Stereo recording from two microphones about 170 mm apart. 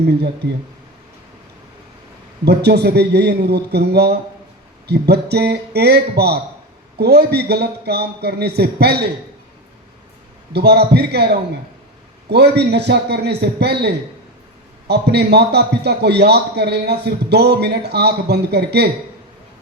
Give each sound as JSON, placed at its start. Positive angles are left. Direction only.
{"t": 0.4, "sound": "speech", "side_deg": -80}
{"t": 2.4, "sound": "a man's voice", "side_deg": -75}
{"t": 10.5, "sound": "a man's voice", "side_deg": -70}